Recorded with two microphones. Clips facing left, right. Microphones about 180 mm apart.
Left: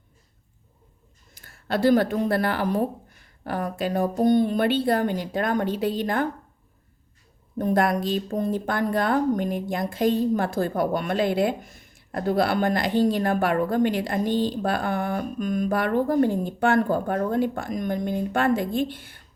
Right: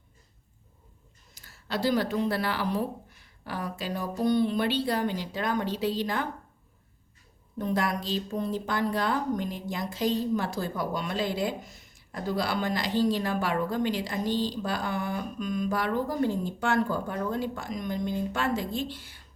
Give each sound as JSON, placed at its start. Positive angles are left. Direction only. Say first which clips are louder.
{"t": 1.3, "sound": "a woman's voice", "louder": "left 6 dB", "side_deg": 55}
{"t": 7.6, "sound": "a woman's voice", "louder": "left 7 dB", "side_deg": 55}